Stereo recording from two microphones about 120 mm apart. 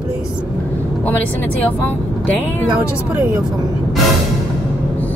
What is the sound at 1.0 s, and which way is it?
Speech, 15° left (ahead or behind).